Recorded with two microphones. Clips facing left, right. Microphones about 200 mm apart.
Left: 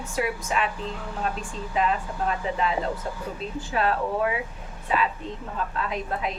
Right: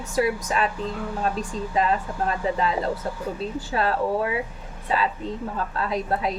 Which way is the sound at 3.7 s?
35° right (ahead or behind).